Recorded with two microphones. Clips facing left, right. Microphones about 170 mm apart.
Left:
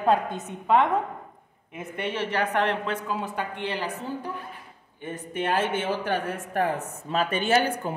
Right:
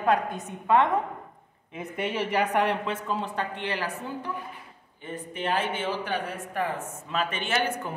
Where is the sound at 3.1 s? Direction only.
5° left (ahead or behind).